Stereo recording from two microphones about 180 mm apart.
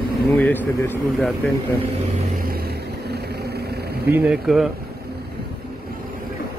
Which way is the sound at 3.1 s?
65° right (ahead or behind).